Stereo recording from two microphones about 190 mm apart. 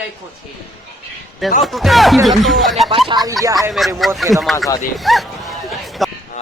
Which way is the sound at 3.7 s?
Centre (ahead or behind).